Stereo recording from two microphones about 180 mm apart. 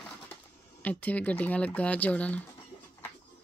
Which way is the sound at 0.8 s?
10° left (ahead or behind).